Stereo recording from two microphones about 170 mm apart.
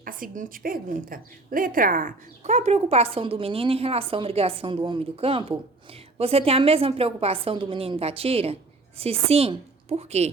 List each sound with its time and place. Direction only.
0.0 s a woman's voice: 55° right (ahead or behind); by 10.3 s 40° right (ahead or behind)